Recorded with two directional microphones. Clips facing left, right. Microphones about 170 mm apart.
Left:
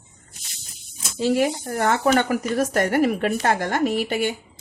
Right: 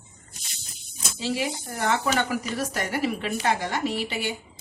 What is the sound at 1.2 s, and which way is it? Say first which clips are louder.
Speech: left 8 dB; 50° left (ahead or behind).